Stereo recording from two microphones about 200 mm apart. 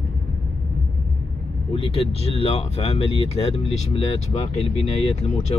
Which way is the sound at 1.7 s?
30° left (ahead or behind).